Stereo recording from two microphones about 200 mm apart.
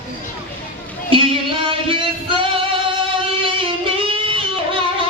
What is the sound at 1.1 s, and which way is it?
Music, 25° right (ahead or behind).